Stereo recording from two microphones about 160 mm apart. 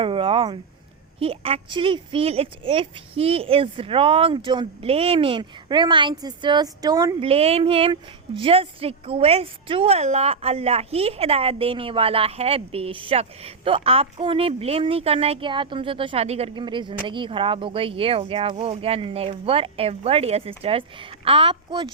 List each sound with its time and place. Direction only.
0.0 s speech: 35° right (ahead or behind)
7.2 s speech: 35° right (ahead or behind)